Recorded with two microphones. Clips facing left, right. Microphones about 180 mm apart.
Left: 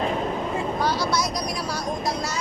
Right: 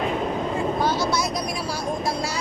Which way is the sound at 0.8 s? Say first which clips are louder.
Even; 25° right (ahead or behind).